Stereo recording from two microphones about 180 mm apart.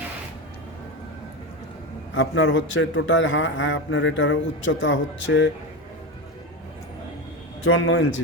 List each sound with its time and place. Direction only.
2.1 s a man's voice: 90° left
7.6 s a man's voice: 90° left